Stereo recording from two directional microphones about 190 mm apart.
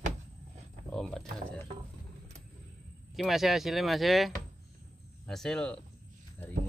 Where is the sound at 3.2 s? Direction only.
Centre (ahead or behind).